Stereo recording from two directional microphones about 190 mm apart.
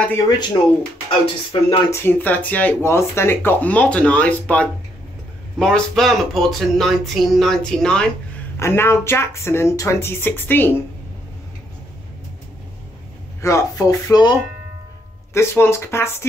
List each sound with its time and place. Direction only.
0.0 s speech: 10° left (ahead or behind)
1.2 s speech: 30° left (ahead or behind)
1.9 s speech: 10° left (ahead or behind)
13.4 s speech: 15° left (ahead or behind)
15.3 s speech: 15° left (ahead or behind)